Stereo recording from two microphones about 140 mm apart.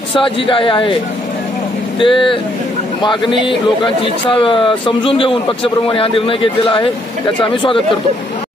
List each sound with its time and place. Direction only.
0.1 s a man's voice: 40° left (ahead or behind)
2.0 s a man's voice: 40° left (ahead or behind)